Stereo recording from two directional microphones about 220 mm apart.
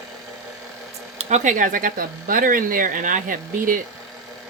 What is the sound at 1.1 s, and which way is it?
Speech, 30° right (ahead or behind).